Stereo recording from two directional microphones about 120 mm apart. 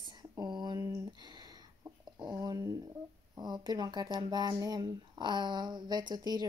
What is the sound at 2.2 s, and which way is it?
Speech, 30° right (ahead or behind).